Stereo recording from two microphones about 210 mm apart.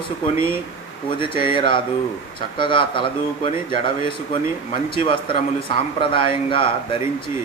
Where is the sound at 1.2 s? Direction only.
25° left (ahead or behind).